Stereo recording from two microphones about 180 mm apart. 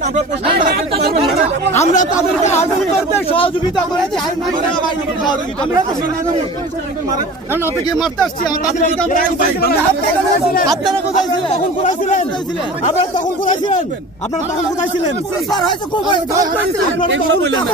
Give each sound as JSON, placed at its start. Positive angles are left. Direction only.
{"t": 1.8, "sound": "speech", "side_deg": 40}
{"t": 7.9, "sound": "speech", "side_deg": 0}
{"t": 11.8, "sound": "speech", "side_deg": 45}